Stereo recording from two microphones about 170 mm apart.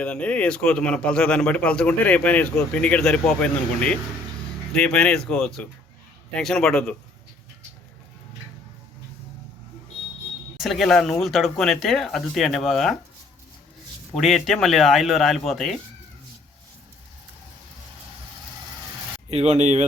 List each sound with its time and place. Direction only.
0.0 s a man's voice: 5° left (ahead or behind)
10.6 s speech: centre (ahead or behind)
14.2 s speech: centre (ahead or behind)
19.3 s speech: 40° right (ahead or behind)